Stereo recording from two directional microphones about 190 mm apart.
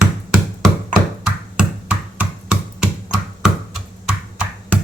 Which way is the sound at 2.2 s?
5° right (ahead or behind).